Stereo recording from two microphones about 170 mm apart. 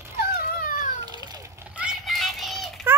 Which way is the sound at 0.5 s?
55° left (ahead or behind).